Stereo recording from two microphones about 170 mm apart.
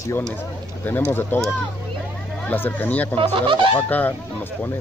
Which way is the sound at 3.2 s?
30° right (ahead or behind).